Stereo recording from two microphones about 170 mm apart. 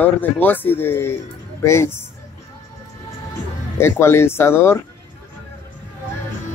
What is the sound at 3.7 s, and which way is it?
Speech, 15° left (ahead or behind).